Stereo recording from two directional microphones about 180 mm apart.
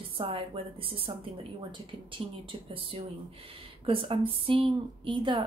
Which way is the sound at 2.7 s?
30° right (ahead or behind).